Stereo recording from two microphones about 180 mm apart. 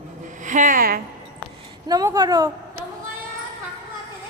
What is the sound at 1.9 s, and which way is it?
Music, 20° right (ahead or behind).